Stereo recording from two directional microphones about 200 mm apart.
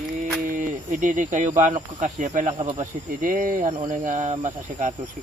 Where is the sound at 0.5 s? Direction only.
35° right (ahead or behind).